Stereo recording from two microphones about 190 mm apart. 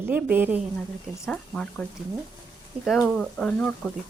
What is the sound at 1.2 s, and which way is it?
Speech, 5° left (ahead or behind).